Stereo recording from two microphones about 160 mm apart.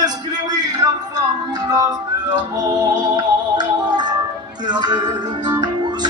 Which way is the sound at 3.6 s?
25° right (ahead or behind).